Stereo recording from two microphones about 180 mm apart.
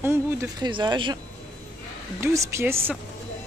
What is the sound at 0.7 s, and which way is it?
Speech, 25° right (ahead or behind).